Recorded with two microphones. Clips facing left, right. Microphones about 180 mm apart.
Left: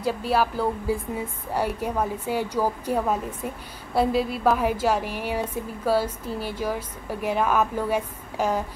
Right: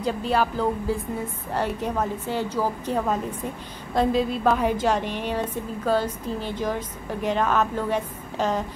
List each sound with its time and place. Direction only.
0.0 s a woman's voice: 5° left (ahead or behind)